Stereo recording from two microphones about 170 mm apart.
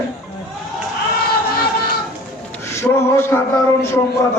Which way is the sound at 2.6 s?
15° left (ahead or behind).